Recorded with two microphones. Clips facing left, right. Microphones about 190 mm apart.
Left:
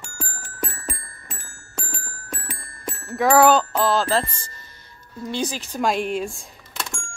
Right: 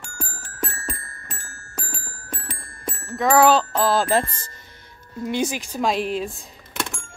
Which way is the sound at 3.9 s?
15° right (ahead or behind).